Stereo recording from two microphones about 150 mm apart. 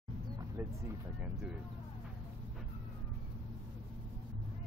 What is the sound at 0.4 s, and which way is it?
Speech, 15° right (ahead or behind).